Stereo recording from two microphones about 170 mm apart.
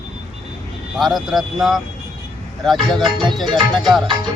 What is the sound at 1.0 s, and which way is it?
Speech, centre (ahead or behind).